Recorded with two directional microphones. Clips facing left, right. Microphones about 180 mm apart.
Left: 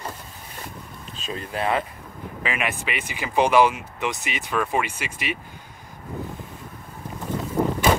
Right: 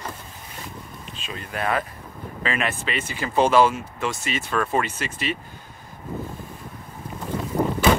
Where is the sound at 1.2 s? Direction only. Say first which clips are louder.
Left 2 dB; 35° left (ahead or behind).